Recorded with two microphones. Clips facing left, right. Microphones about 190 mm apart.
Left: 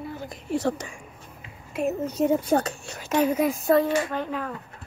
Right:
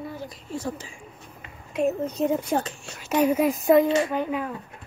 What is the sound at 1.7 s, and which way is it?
Speech, 5° left (ahead or behind).